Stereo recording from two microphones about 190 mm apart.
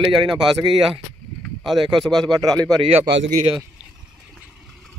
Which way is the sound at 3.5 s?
5° right (ahead or behind).